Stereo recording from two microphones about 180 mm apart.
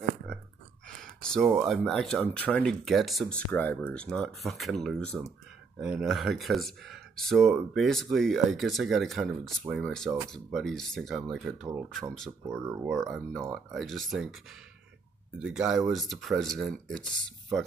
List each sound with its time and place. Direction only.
0.8 s a sound: 5° left (ahead or behind)
1.6 s speech: centre (ahead or behind)
12.5 s speech: 15° right (ahead or behind)
12.9 s speech: centre (ahead or behind)
15.3 s speech: 5° right (ahead or behind)